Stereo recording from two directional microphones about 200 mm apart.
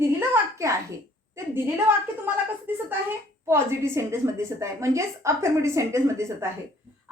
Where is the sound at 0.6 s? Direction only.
15° right (ahead or behind).